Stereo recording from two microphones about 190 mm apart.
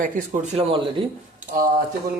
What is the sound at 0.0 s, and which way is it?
Speech, 45° right (ahead or behind).